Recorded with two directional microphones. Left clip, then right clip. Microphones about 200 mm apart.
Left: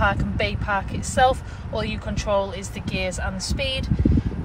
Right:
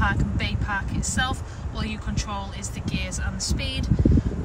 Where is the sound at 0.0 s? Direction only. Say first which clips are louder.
Left 4 dB; 10° left (ahead or behind).